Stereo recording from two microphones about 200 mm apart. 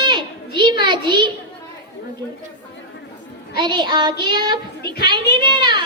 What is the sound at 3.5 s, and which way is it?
Child singing, 20° right (ahead or behind).